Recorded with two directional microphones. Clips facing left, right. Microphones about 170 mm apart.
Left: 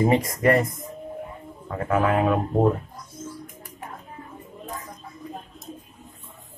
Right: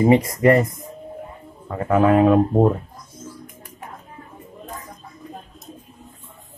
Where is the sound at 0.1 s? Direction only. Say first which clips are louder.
Right 5 dB; 25° right (ahead or behind).